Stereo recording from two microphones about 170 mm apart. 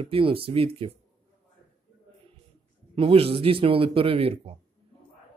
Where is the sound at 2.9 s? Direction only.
35° right (ahead or behind).